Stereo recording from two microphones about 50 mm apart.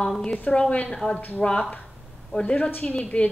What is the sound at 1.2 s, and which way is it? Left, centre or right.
Speech, left.